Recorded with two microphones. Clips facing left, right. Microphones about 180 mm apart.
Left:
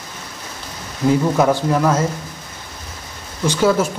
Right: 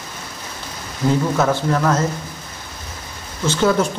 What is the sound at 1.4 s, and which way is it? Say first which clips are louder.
Speech: left 2 dB; 10° left (ahead or behind).